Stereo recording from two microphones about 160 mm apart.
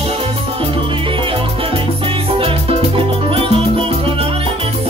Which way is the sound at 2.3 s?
35° right (ahead or behind).